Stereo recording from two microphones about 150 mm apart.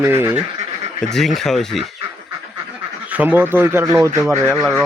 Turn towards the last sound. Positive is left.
turn(degrees=0)  # may be behind; listen again after turning